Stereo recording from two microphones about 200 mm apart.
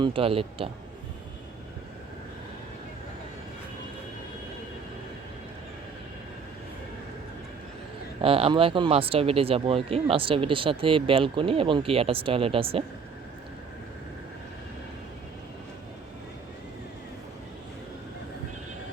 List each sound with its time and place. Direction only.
0.0 s speech: 25° right (ahead or behind)
8.2 s speech: 30° right (ahead or behind)